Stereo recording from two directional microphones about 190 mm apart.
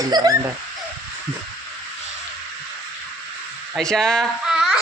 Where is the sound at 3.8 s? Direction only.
5° left (ahead or behind).